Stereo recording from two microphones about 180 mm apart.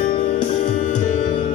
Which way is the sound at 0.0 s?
45° left (ahead or behind).